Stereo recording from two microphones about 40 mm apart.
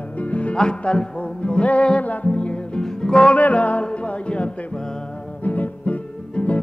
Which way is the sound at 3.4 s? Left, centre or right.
Left.